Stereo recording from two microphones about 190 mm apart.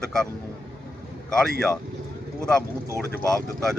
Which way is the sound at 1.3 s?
5° left (ahead or behind).